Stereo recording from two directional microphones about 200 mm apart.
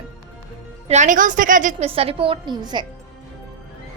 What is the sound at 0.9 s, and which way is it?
A woman's voice, 35° right (ahead or behind).